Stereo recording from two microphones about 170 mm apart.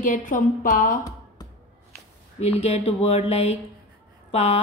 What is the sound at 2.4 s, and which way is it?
A woman's voice, 40° left (ahead or behind).